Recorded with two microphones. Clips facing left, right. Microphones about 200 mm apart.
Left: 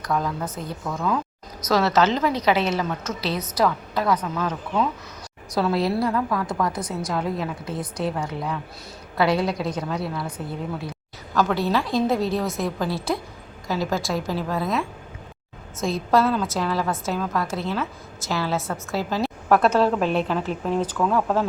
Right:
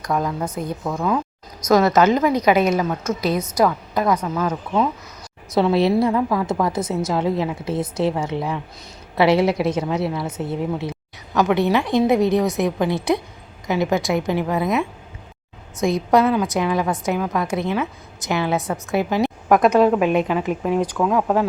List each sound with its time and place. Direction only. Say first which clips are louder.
0.0 s a woman's voice: right 3 dB; 15° right (ahead or behind)
2.7 s a woman's voice: right 5 dB; 10° right (ahead or behind)
5.5 s a woman's voice: right 5 dB; 25° right (ahead or behind)